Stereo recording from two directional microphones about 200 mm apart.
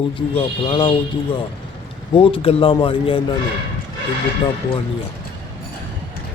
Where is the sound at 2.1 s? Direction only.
25° left (ahead or behind).